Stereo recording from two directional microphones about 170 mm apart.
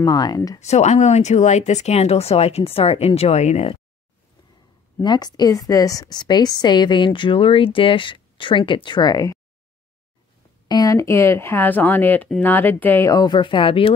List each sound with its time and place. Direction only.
0.0 s a woman's voice: 25° left (ahead or behind)
0.6 s speech: 40° left (ahead or behind)
5.0 s a woman's voice: 25° left (ahead or behind)
10.7 s speech: 20° left (ahead or behind)